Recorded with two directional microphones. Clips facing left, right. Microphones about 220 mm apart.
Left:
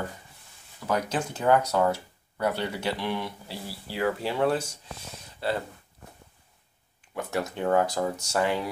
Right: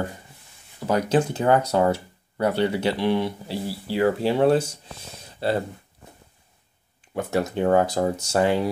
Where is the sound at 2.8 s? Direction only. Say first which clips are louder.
Right 8 dB; 25° right (ahead or behind).